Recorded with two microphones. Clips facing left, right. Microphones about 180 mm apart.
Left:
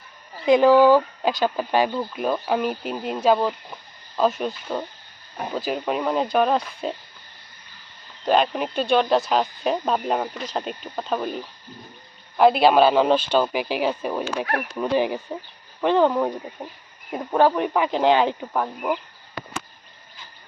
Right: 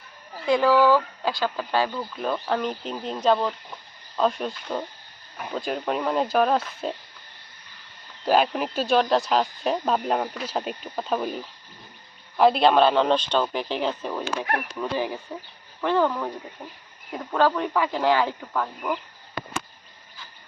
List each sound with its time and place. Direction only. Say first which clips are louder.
0.4 s speech: left 5 dB; 20° left (ahead or behind); by 6.9 s centre (ahead or behind)
8.2 s speech: left 1 dB; 5° right (ahead or behind); by 16.7 s 35° left (ahead or behind)
17.1 s speech: left 3 dB; 20° left (ahead or behind)